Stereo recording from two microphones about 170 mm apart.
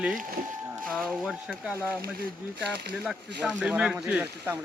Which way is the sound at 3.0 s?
5° right (ahead or behind).